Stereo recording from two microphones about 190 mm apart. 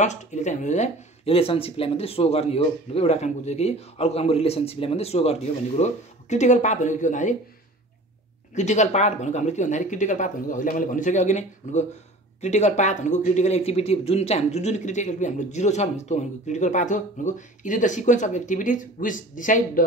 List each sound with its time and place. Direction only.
0.0 s speech: 40° left (ahead or behind)
8.5 s speech: 40° left (ahead or behind)